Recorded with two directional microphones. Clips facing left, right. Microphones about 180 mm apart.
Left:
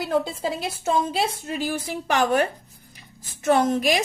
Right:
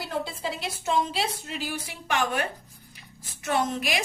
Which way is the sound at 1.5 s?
45° left (ahead or behind).